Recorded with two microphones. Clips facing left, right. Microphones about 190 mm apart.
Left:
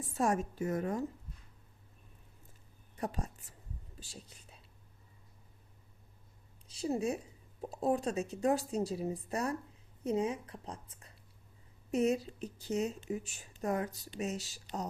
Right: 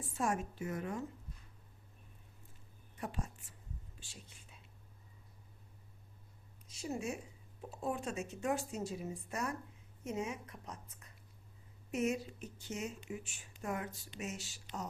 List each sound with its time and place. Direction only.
0.2 s speech: 40° left (ahead or behind)
3.0 s speech: 40° left (ahead or behind)
4.0 s whispering: 40° left (ahead or behind)
6.7 s speech: 35° left (ahead or behind)